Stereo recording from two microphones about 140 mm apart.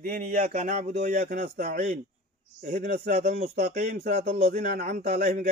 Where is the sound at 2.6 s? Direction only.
90° right.